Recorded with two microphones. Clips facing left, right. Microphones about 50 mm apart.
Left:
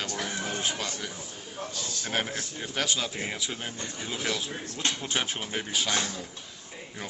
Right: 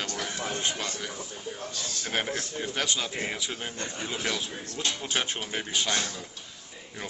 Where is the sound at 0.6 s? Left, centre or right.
Centre.